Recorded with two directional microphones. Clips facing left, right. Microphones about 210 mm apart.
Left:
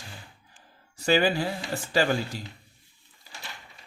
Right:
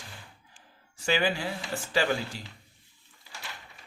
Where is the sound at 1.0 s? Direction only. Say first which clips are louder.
Left 5 dB; 40° left (ahead or behind).